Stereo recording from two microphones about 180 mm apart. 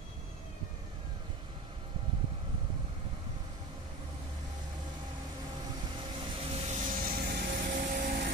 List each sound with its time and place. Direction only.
6.1 s vehicle: 35° right (ahead or behind); by 8.3 s 50° right (ahead or behind)